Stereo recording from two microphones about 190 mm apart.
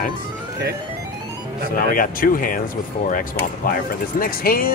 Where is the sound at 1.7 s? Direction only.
45° left (ahead or behind).